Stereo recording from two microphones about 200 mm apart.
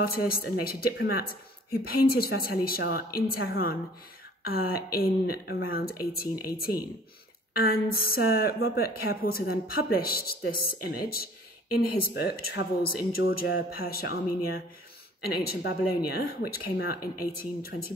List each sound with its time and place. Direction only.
0.0 s a woman's voice: 50° left (ahead or behind)